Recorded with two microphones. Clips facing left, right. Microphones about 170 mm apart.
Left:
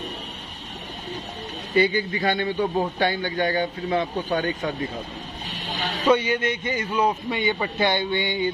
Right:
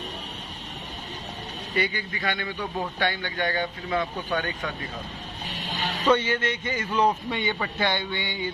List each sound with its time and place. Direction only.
1.8 s a man's voice: 25° left (ahead or behind)
6.0 s a man's voice: 10° left (ahead or behind)